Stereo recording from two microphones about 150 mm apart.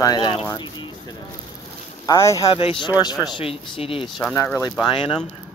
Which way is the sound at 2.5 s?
35° left (ahead or behind).